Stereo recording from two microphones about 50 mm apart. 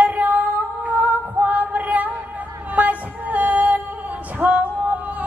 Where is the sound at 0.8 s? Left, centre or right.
Right.